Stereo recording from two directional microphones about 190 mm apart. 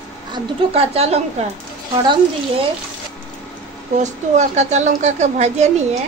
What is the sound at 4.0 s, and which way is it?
A woman's voice, 35° right (ahead or behind).